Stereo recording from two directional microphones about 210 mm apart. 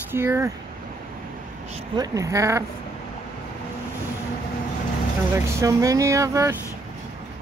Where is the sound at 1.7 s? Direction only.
20° right (ahead or behind).